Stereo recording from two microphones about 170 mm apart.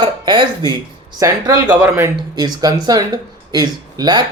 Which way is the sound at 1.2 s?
20° right (ahead or behind).